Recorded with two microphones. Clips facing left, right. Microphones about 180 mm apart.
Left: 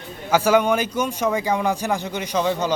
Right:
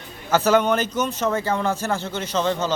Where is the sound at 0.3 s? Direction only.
10° left (ahead or behind).